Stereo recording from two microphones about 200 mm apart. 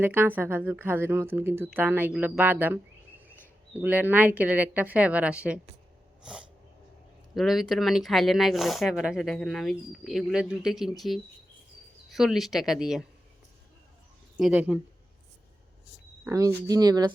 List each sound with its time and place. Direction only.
0.0 s speech: 10° right (ahead or behind)
7.3 s speech: centre (ahead or behind)
14.3 s speech: 5° right (ahead or behind)
16.2 s speech: 15° right (ahead or behind)